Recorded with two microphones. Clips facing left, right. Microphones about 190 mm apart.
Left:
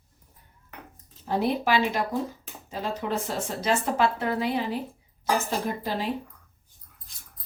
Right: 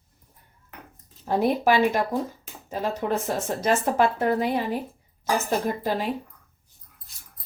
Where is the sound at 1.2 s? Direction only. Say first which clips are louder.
Right 4 dB; 45° right (ahead or behind).